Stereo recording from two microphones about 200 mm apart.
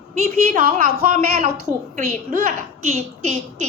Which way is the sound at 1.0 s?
40° right (ahead or behind).